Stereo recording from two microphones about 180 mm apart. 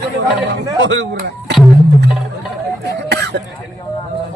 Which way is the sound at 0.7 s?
90° right.